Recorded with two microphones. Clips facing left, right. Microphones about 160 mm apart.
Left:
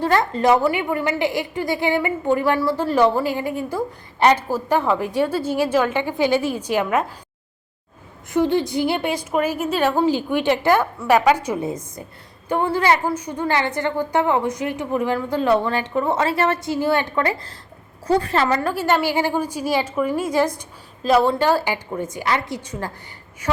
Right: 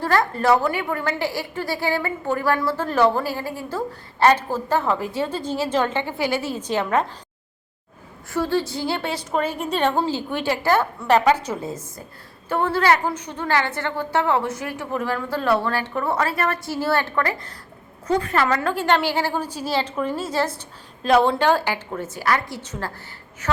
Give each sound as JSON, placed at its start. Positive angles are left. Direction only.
{"t": 0.0, "sound": "a woman's voice", "side_deg": 20}
{"t": 8.3, "sound": "a woman's voice", "side_deg": 20}
{"t": 18.1, "sound": "a woman's voice", "side_deg": 35}
{"t": 18.4, "sound": "a woman's voice", "side_deg": 10}
{"t": 21.0, "sound": "a woman's voice", "side_deg": 5}